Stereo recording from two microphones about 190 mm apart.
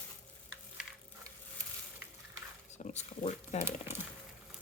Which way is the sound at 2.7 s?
35° left (ahead or behind).